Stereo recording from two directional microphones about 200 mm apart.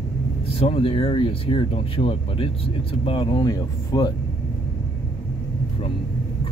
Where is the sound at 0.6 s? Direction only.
30° left (ahead or behind).